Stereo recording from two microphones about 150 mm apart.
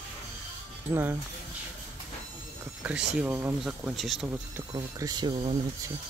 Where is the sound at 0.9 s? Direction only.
20° right (ahead or behind).